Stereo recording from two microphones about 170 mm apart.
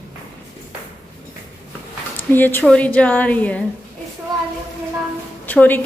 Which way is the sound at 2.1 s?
10° left (ahead or behind).